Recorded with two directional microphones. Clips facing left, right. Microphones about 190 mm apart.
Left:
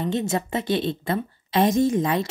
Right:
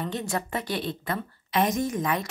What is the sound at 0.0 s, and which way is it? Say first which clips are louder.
A woman's voice: left 6 dB; 25° left (ahead or behind).